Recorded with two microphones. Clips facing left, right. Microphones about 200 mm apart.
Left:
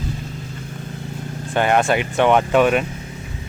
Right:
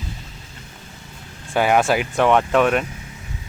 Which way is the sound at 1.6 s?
5° right (ahead or behind).